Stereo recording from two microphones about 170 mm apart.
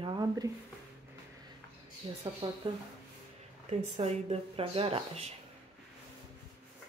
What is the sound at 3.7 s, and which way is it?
Speech, 40° right (ahead or behind).